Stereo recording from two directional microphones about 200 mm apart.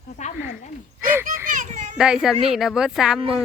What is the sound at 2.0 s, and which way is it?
Speech, 5° right (ahead or behind).